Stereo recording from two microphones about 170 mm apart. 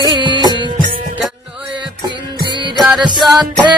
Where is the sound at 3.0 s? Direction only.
25° right (ahead or behind).